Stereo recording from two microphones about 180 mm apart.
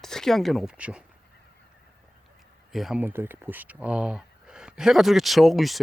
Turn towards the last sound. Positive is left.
turn(degrees=0)  # may be behind; listen again after turning